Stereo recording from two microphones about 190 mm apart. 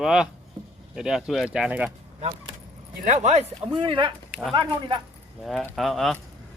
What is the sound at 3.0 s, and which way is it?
Speech, 40° right (ahead or behind).